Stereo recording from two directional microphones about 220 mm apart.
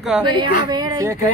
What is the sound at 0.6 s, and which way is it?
Speech, 20° right (ahead or behind).